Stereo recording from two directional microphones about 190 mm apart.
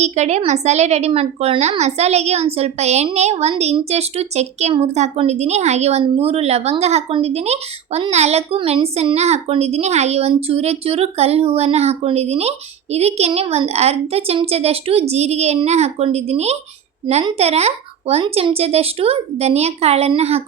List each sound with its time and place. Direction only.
0.0 s a woman's voice: 35° right (ahead or behind)